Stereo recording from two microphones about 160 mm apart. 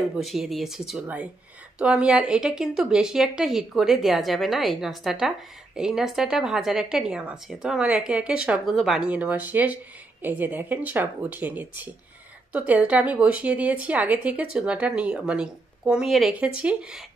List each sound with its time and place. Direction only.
0.2 s a woman's voice: centre (ahead or behind)